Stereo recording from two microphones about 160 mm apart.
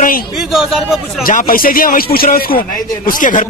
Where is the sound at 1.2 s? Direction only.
60° left (ahead or behind).